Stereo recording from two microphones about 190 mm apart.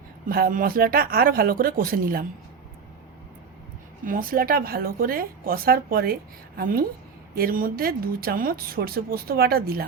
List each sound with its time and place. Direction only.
0.3 s speech: 50° right (ahead or behind)
4.0 s speech: 45° right (ahead or behind)